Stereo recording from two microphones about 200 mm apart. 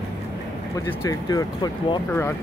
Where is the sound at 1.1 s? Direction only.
20° left (ahead or behind).